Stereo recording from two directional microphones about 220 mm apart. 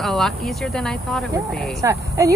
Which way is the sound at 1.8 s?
15° right (ahead or behind).